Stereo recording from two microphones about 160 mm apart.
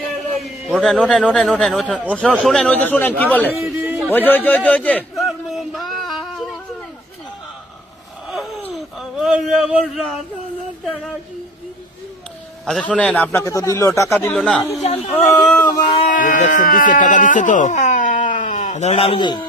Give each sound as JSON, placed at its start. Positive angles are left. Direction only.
{"t": 0.8, "sound": "a man's voice", "side_deg": 5}
{"t": 3.6, "sound": "a sound", "side_deg": -15}
{"t": 4.3, "sound": "a sound", "side_deg": 10}
{"t": 8.7, "sound": "a sound", "side_deg": 0}
{"t": 12.6, "sound": "a man's voice", "side_deg": 5}
{"t": 14.3, "sound": "speech", "side_deg": 5}
{"t": 14.8, "sound": "speech", "side_deg": 45}
{"t": 15.3, "sound": "a man's voice", "side_deg": 15}
{"t": 16.0, "sound": "speech", "side_deg": 55}